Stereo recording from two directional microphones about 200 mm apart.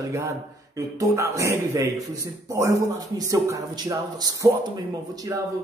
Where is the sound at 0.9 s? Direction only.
15° right (ahead or behind).